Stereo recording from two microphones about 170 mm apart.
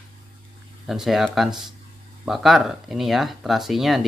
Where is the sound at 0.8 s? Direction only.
Centre (ahead or behind).